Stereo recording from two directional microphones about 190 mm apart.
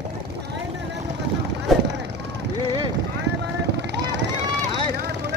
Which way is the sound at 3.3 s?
60° right (ahead or behind).